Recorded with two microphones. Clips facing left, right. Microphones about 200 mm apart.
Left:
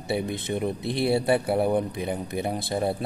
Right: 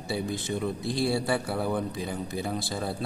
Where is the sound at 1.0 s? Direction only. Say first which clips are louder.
Left 5 dB; 25° left (ahead or behind).